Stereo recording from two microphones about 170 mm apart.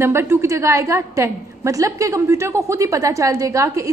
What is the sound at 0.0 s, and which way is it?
A woman's voice, 15° right (ahead or behind).